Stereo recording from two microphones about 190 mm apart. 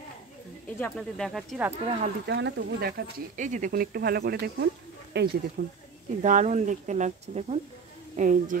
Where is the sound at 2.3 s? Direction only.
65° right (ahead or behind).